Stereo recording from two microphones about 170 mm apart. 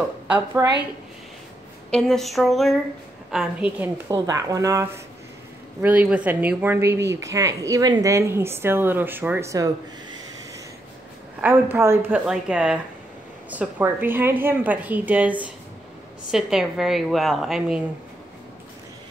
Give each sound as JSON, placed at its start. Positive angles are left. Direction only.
{"t": 1.9, "sound": "a woman's voice", "side_deg": 5}
{"t": 5.8, "sound": "speech", "side_deg": -10}
{"t": 11.4, "sound": "a woman's voice", "side_deg": -15}